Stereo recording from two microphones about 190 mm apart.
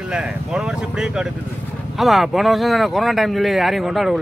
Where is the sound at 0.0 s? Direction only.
5° right (ahead or behind).